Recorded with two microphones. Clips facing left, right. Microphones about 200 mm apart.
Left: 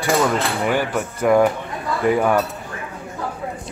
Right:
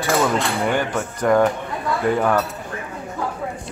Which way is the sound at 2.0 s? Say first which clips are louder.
Left 3 dB; 5° left (ahead or behind).